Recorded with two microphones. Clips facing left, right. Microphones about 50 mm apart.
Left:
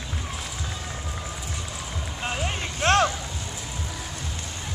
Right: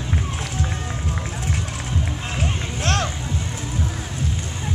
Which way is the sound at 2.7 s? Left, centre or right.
Left.